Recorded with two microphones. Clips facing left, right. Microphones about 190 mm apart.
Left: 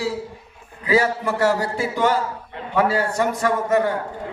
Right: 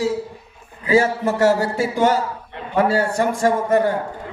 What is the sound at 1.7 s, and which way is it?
A man's voice, 45° right (ahead or behind).